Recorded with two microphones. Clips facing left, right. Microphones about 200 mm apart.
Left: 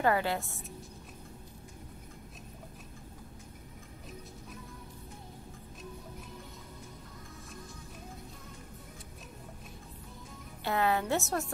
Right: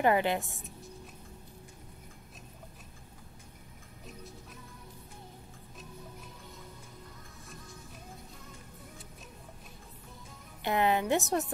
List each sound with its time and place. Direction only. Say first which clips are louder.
0.0 s a woman's voice: right 2 dB; 20° right (ahead or behind)
10.6 s a woman's voice: right 2 dB; 20° right (ahead or behind)